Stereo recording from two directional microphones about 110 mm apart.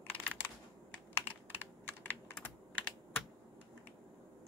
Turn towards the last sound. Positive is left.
turn(degrees=15)  # may be behind; listen again after turning